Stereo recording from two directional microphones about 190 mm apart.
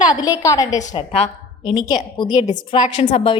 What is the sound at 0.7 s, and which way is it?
Speech, 40° left (ahead or behind).